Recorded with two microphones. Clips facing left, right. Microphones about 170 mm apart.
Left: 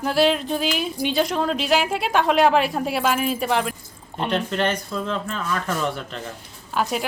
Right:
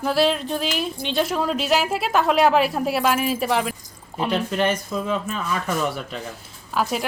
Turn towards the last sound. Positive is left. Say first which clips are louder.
# even
turn(degrees=0)  # may be behind; listen again after turning